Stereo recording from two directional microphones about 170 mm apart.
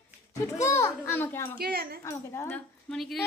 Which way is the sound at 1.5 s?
60° right (ahead or behind).